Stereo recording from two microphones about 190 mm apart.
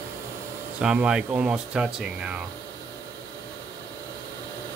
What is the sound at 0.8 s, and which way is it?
Speech, 5° right (ahead or behind).